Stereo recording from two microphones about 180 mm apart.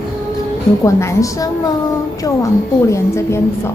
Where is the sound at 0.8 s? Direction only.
15° left (ahead or behind).